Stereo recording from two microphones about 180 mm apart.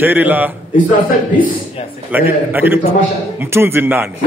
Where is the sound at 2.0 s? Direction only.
10° right (ahead or behind).